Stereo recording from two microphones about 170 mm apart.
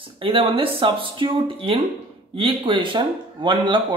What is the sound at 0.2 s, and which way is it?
Speech, 30° right (ahead or behind).